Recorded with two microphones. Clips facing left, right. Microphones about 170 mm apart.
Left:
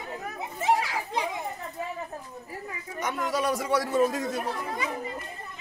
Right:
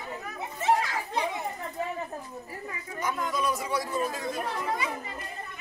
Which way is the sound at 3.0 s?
85° left.